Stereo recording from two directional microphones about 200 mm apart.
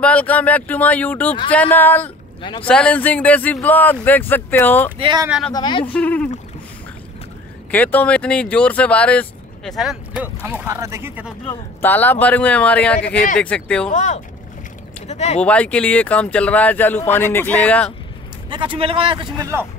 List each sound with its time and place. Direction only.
0.0 s speech: 5° left (ahead or behind)
4.9 s a man's voice: 25° right (ahead or behind)
5.5 s speech: 25° left (ahead or behind)
5.9 s speech: 5° left (ahead or behind)
7.7 s speech: 10° left (ahead or behind); by 11.3 s 10° right (ahead or behind)
11.8 s speech: 10° left (ahead or behind)
13.8 s speech: 40° left (ahead or behind)
15.4 s speech: 5° left (ahead or behind)
18.5 s a man's voice: 25° right (ahead or behind)